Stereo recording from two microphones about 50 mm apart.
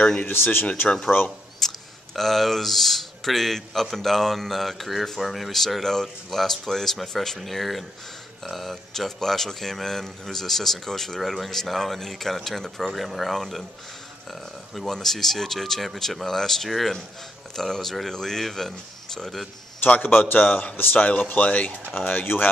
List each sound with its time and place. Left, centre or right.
0.3 s speech: left
1.6 s camera: centre
2.1 s a man's voice: centre
14.7 s speech: centre
19.9 s speech: left